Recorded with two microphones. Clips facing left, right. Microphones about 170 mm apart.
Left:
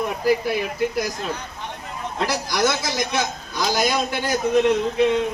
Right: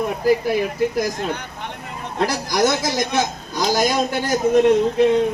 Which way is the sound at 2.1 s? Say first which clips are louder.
Right 4 dB; 45° right (ahead or behind).